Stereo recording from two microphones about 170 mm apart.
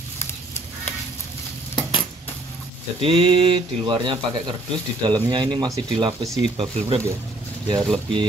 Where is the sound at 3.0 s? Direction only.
35° right (ahead or behind).